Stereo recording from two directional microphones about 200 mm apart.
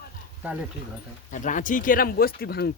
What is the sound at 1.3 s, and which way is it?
Speech, 40° left (ahead or behind).